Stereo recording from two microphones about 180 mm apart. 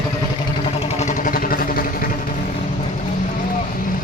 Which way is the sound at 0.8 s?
35° left (ahead or behind).